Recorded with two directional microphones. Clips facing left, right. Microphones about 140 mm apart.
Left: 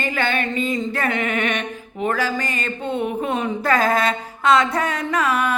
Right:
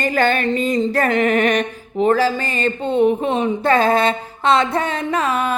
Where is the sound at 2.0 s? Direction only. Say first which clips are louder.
Right 6 dB; 30° right (ahead or behind).